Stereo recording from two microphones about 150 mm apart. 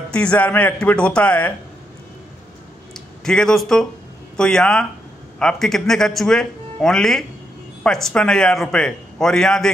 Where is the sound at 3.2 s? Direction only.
5° left (ahead or behind).